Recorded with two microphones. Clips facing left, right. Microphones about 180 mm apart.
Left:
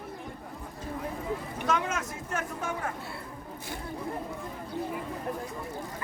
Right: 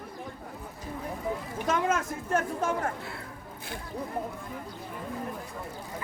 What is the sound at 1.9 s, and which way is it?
Speech, 50° right (ahead or behind).